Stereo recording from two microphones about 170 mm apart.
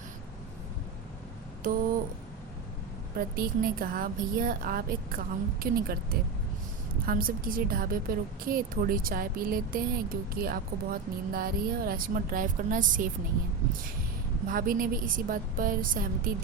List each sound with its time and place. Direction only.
3.2 s a woman's voice: 60° right (ahead or behind)
14.4 s a woman's voice: 55° right (ahead or behind)